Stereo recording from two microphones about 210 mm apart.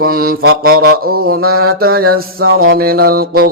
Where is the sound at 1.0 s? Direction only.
45° right (ahead or behind).